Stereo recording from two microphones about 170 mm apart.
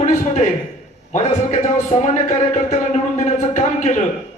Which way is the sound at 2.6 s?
40° left (ahead or behind).